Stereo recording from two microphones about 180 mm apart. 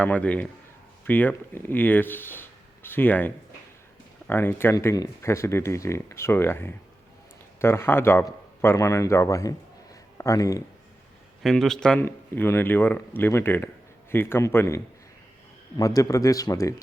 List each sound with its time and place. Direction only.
0.0 s speech: 10° left (ahead or behind)
11.4 s speech: 5° left (ahead or behind)
15.8 s speech: 20° left (ahead or behind)